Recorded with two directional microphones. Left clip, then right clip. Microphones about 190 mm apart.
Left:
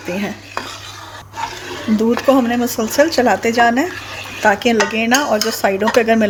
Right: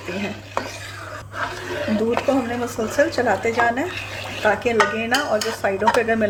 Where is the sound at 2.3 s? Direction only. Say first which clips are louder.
Left 7 dB; 40° left (ahead or behind).